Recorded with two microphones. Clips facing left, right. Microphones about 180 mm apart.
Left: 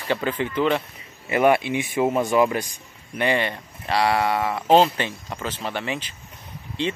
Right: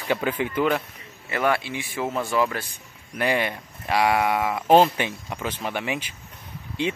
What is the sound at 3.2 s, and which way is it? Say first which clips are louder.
Speech: left 1 dB; 5° right (ahead or behind).